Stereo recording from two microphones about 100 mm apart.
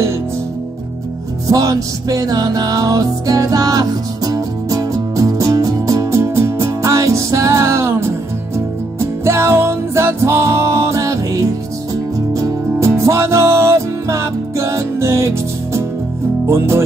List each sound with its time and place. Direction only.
1.5 s music: 35° right (ahead or behind)
12.4 s music: 30° right (ahead or behind)
16.4 s speech: 25° right (ahead or behind)